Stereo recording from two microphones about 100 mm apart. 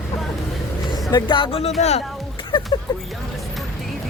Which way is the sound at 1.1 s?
55° left (ahead or behind).